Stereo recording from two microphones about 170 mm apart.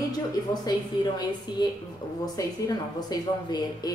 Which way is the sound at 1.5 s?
25° left (ahead or behind).